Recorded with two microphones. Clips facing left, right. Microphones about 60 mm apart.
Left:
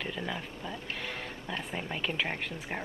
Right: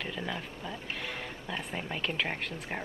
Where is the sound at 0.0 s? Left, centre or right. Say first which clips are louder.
Even; centre.